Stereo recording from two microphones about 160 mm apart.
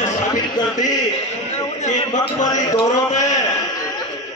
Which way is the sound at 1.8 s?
50° left (ahead or behind).